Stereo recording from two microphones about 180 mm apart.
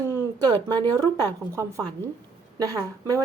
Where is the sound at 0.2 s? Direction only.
20° right (ahead or behind).